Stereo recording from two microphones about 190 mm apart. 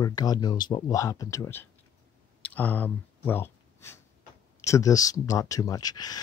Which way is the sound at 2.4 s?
10° left (ahead or behind).